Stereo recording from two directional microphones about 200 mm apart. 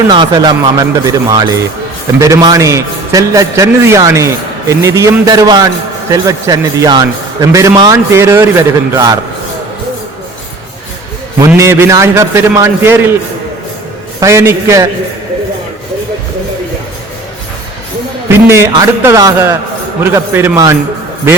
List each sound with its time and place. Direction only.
0.1 s a man's voice: 25° right (ahead or behind)
11.3 s a man's voice: 15° right (ahead or behind)
14.2 s a man's voice: 15° right (ahead or behind)
18.3 s a man's voice: 10° right (ahead or behind)